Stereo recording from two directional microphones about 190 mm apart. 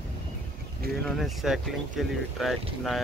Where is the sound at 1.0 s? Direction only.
Centre (ahead or behind).